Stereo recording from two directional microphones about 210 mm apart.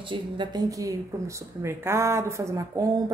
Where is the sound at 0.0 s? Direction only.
25° right (ahead or behind).